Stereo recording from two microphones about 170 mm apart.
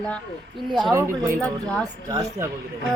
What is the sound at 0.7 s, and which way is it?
Speech, 20° right (ahead or behind).